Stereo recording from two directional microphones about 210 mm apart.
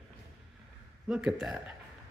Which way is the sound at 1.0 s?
5° right (ahead or behind).